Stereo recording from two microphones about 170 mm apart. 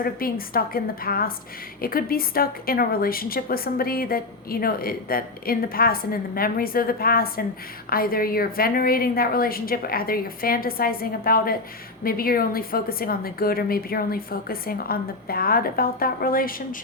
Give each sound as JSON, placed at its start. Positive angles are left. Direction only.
{"t": 0.0, "sound": "a woman's voice", "side_deg": 60}